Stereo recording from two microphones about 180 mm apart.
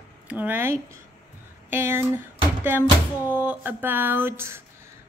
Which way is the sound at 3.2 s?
10° right (ahead or behind).